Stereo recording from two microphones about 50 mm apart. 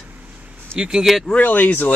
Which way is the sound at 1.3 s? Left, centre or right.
Left.